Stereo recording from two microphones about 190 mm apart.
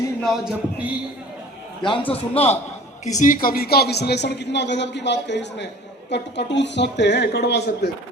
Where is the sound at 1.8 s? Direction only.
25° left (ahead or behind).